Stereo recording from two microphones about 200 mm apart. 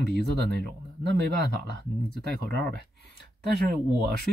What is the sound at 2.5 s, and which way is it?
Speech, 50° right (ahead or behind).